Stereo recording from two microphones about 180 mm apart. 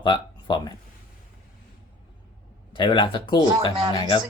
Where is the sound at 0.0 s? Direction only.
25° left (ahead or behind).